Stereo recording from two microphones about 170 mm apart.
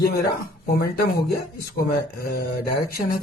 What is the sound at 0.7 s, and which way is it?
Speech, 65° left (ahead or behind).